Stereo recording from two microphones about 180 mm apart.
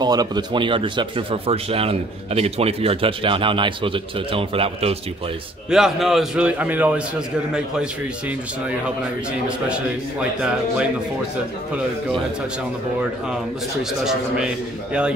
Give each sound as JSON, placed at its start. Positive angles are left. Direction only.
{"t": 0.0, "sound": "speech", "side_deg": -20}
{"t": 5.7, "sound": "a man's voice", "side_deg": 0}
{"t": 10.4, "sound": "speech", "side_deg": -5}